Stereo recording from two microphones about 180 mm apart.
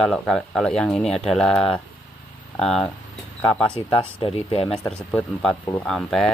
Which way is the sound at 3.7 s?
30° left (ahead or behind).